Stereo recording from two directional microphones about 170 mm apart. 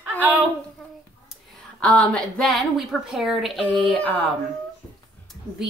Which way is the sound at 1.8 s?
5° left (ahead or behind).